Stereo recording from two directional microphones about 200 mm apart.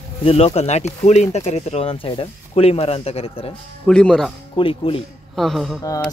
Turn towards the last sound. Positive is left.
turn(degrees=0)  # may be behind; listen again after turning